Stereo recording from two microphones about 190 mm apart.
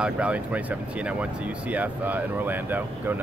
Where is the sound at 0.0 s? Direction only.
5° right (ahead or behind).